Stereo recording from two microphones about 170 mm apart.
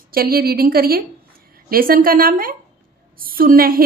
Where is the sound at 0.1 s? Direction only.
60° right (ahead or behind).